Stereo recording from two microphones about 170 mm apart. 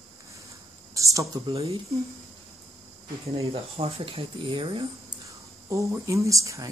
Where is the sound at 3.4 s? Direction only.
35° right (ahead or behind).